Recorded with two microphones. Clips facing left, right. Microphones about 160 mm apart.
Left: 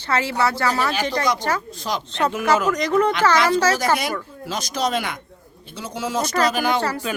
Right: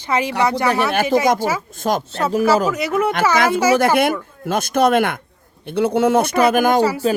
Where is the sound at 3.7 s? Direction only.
55° right (ahead or behind).